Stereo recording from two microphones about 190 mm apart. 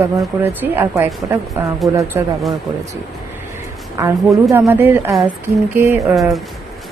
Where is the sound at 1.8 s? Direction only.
Centre (ahead or behind).